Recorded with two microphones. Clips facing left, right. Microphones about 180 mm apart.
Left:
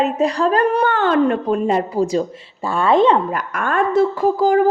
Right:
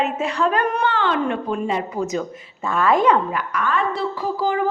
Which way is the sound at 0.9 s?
45° left (ahead or behind).